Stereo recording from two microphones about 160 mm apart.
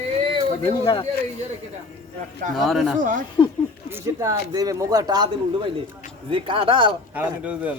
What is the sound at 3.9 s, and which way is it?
Speech, 20° right (ahead or behind).